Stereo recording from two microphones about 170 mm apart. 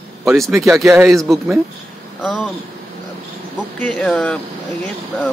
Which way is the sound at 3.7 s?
5° left (ahead or behind).